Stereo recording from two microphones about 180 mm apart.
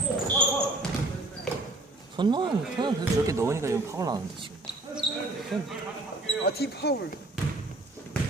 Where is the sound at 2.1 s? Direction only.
25° right (ahead or behind).